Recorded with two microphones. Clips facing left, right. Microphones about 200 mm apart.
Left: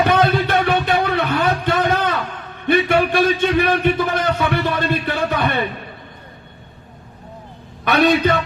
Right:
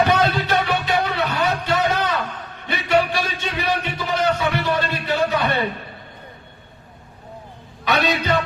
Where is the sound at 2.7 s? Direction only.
55° left (ahead or behind).